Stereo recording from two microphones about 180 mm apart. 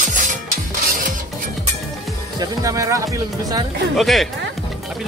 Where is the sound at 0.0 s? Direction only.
45° right (ahead or behind).